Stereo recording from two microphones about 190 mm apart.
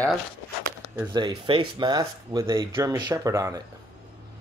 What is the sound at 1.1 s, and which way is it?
Speech, 20° right (ahead or behind).